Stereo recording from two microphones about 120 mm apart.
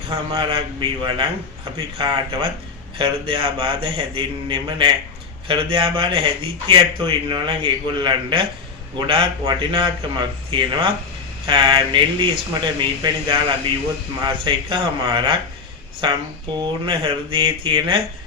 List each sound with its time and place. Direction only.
0.3 s a man's voice: 45° right (ahead or behind)
16.6 s a man's voice: 45° right (ahead or behind)